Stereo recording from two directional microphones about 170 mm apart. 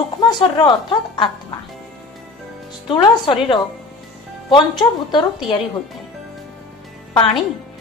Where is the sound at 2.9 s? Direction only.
30° left (ahead or behind).